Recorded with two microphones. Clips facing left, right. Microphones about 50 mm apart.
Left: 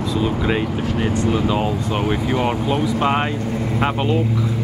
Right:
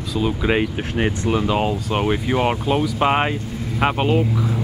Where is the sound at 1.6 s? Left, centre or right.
Right.